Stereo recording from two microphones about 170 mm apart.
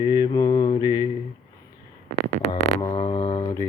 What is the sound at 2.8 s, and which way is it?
Music, 30° left (ahead or behind).